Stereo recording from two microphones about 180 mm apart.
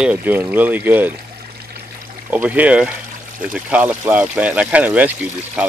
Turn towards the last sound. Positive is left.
turn(degrees=-10)  # may be behind; listen again after turning